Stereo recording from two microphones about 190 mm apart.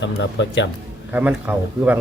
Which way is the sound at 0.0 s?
70° left (ahead or behind).